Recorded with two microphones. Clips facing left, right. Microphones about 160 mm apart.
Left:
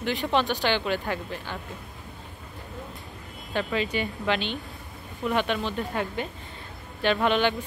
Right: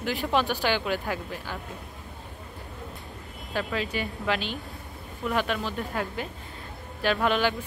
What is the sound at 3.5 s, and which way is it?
Speech, centre (ahead or behind).